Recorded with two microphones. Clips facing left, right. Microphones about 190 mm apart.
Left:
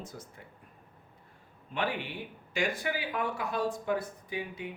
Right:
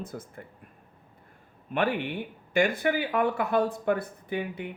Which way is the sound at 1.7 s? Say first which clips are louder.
Right 6 dB; 55° right (ahead or behind).